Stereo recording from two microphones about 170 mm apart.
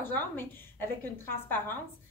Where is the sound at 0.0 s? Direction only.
10° left (ahead or behind).